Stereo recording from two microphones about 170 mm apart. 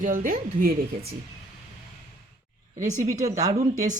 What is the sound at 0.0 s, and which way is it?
Speech, 50° right (ahead or behind).